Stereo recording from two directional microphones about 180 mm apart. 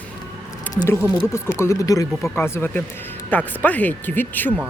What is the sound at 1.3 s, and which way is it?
Speech, 15° left (ahead or behind).